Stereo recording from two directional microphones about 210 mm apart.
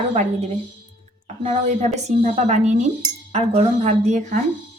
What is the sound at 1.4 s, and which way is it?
A woman's voice, 30° right (ahead or behind).